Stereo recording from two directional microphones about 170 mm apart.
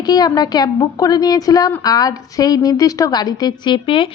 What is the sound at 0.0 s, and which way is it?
A woman's voice, 25° left (ahead or behind).